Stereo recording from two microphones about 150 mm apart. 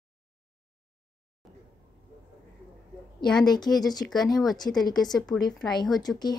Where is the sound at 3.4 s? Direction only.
30° left (ahead or behind).